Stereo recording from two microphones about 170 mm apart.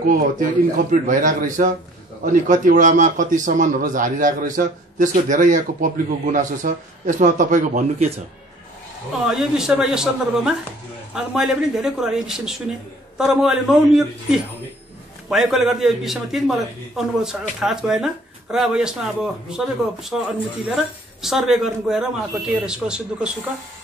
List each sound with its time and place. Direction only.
0.0 s a man's voice: 50° right (ahead or behind)
9.2 s speech: 5° right (ahead or behind)
15.2 s speech: centre (ahead or behind)